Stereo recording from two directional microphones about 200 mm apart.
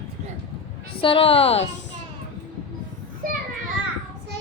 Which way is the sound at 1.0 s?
25° left (ahead or behind).